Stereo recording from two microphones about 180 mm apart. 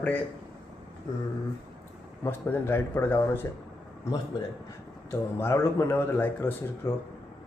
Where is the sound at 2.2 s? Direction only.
10° left (ahead or behind).